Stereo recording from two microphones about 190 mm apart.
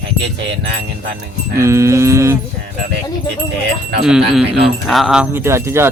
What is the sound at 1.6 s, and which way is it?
Speech, 15° right (ahead or behind).